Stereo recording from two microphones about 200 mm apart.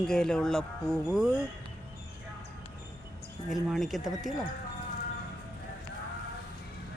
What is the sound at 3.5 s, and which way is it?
Speech, centre (ahead or behind).